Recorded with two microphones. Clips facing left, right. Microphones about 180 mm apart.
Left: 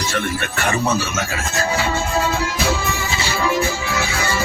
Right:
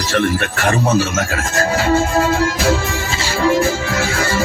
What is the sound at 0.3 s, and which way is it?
Music, 45° right (ahead or behind).